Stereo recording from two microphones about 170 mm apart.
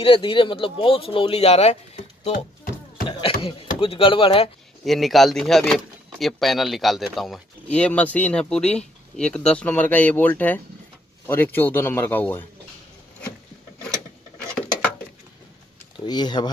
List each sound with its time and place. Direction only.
0.0 s speech: 30° left (ahead or behind)
3.1 s speech: 30° left (ahead or behind)
4.8 s a man's voice: centre (ahead or behind)
16.1 s speech: 25° left (ahead or behind)